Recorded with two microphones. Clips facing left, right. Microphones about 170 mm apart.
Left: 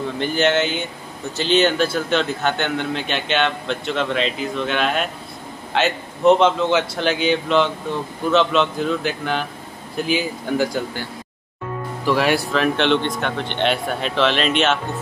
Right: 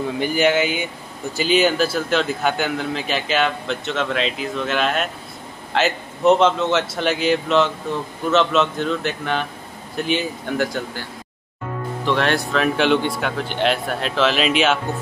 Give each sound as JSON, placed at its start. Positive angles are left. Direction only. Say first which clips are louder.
{"t": 0.2, "sound": "speech", "louder": "even", "side_deg": -10}